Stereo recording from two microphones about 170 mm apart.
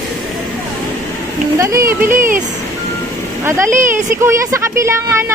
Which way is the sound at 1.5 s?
20° right (ahead or behind).